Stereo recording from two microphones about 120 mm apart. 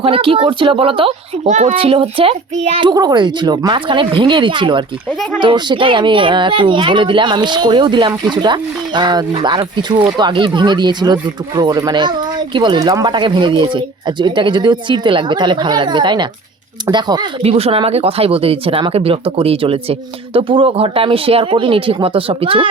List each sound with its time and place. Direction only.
0.0 s speech: 50° right (ahead or behind)
1.5 s a child's voice: 75° right (ahead or behind)
1.7 s speech: 50° right (ahead or behind)
2.9 s speech: 35° right (ahead or behind)
17.4 s speech: 55° right (ahead or behind)